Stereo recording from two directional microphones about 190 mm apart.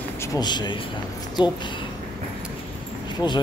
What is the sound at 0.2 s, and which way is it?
Speech, 20° left (ahead or behind).